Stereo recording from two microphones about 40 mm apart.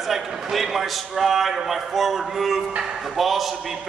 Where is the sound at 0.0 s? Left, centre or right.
Centre.